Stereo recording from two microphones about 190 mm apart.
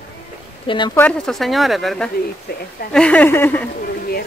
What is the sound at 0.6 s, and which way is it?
Speech, 25° left (ahead or behind).